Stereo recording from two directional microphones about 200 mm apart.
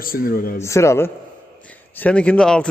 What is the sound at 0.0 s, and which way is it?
Speech, 45° left (ahead or behind).